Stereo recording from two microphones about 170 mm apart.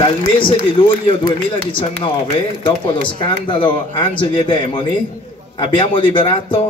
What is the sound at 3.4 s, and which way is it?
A man's voice, 30° left (ahead or behind).